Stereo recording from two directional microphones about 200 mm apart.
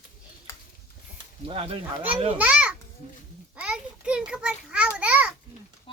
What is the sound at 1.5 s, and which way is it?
Speech, 25° right (ahead or behind).